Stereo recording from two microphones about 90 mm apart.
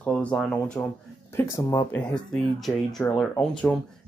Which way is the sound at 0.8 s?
20° left (ahead or behind).